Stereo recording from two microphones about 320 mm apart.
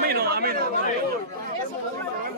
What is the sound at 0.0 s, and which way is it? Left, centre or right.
Chatter, right.